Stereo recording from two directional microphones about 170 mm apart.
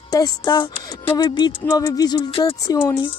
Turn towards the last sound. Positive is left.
turn(degrees=15)  # may be behind; listen again after turning